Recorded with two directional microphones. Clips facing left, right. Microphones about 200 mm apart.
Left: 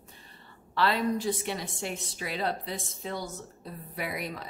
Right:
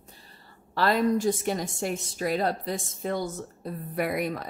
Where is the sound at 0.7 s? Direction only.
45° right (ahead or behind).